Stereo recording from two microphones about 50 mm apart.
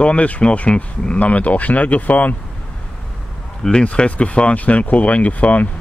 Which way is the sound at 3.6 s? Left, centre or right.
Left.